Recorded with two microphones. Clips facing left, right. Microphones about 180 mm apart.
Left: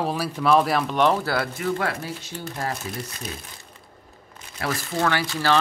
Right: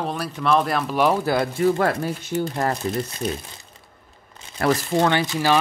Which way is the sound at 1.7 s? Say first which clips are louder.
Right 5 dB; 50° right (ahead or behind).